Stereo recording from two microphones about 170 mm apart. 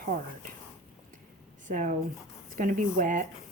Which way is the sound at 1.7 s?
50° right (ahead or behind).